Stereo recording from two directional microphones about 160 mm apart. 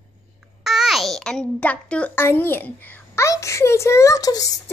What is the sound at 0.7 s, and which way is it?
A child's voice, 5° right (ahead or behind).